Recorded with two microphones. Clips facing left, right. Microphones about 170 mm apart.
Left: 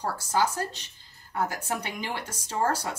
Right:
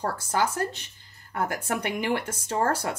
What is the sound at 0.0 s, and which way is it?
Speech, 55° right (ahead or behind).